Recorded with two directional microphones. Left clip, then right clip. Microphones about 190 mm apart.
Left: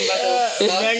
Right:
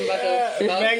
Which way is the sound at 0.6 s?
Centre (ahead or behind).